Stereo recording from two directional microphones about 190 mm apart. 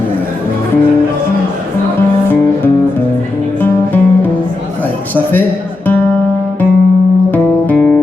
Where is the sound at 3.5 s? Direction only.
10° left (ahead or behind).